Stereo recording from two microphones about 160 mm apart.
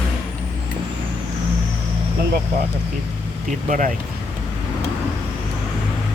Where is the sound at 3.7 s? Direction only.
55° right (ahead or behind).